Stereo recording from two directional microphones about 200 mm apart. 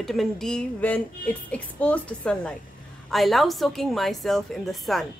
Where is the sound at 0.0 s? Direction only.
Centre (ahead or behind).